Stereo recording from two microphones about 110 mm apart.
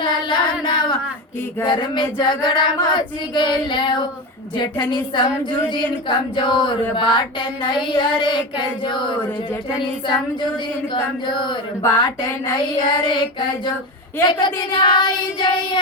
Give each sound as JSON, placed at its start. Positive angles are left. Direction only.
{"t": 0.0, "sound": "child singing", "side_deg": 45}
{"t": 10.9, "sound": "child singing", "side_deg": 45}
{"t": 11.8, "sound": "speech", "side_deg": 25}
{"t": 12.5, "sound": "child singing", "side_deg": 45}